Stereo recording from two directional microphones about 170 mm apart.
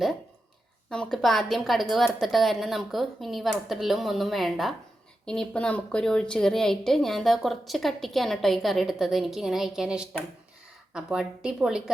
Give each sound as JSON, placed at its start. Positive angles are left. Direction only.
{"t": 0.9, "sound": "a woman's voice", "side_deg": 5}